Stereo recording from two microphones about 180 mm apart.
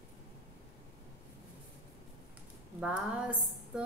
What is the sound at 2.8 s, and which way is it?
Speech, 5° right (ahead or behind).